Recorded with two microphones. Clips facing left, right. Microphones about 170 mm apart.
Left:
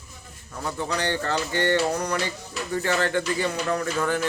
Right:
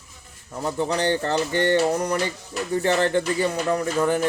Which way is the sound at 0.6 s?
25° right (ahead or behind).